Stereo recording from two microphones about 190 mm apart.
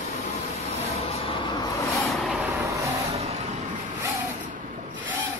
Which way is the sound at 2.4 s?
10° right (ahead or behind).